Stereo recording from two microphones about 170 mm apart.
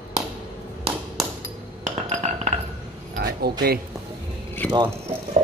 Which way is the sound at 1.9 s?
45° right (ahead or behind).